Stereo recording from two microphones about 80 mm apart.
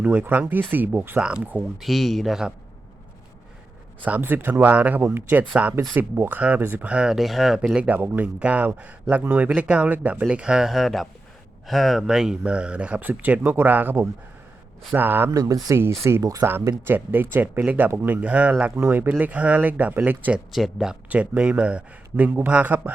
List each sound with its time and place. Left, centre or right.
0.0 s speech: centre
1.8 s a man's voice: centre
4.0 s speech: right
6.4 s speech: centre
9.6 s speech: centre
14.9 s speech: right
15.3 s speech: right
16.4 s speech: right
18.8 s speech: right
20.5 s a man's voice: centre
21.1 s speech: centre